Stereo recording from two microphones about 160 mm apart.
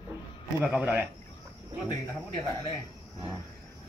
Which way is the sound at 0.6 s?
10° right (ahead or behind).